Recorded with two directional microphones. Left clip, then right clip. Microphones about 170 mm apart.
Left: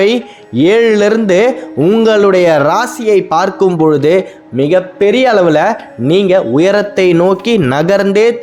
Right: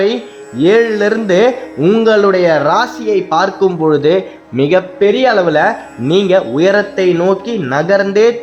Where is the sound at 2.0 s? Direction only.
35° left (ahead or behind).